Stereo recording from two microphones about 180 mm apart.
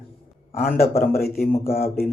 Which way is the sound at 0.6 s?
55° left (ahead or behind).